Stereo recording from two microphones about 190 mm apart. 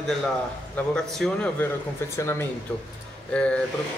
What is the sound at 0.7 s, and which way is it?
Speech, 5° left (ahead or behind).